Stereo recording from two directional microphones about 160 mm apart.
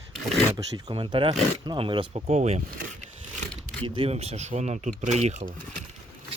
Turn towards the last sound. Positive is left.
turn(degrees=-45)  # may be behind; listen again after turning